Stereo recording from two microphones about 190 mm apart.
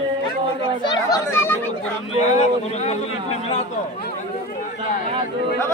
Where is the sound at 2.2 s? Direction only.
35° left (ahead or behind).